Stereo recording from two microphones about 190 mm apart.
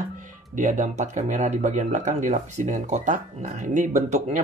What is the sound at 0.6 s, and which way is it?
Speech, 40° right (ahead or behind).